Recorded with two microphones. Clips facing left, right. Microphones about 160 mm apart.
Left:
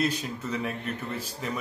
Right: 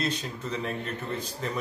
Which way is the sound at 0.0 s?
10° left (ahead or behind).